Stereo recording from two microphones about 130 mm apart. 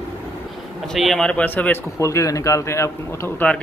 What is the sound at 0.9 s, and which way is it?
Speech, centre (ahead or behind).